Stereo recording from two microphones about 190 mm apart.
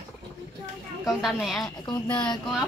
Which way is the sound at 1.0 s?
Centre (ahead or behind).